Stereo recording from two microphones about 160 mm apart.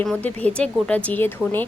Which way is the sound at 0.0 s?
10° left (ahead or behind).